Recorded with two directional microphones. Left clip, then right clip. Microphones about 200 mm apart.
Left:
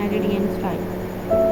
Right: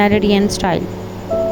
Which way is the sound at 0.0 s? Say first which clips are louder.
Right 9 dB; 45° right (ahead or behind).